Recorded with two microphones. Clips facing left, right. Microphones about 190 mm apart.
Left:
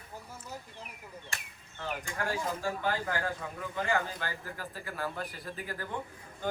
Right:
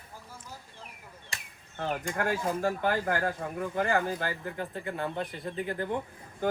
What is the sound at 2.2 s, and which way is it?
Speech, 55° right (ahead or behind).